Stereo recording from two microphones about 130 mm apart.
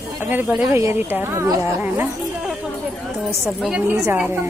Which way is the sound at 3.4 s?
Centre (ahead or behind).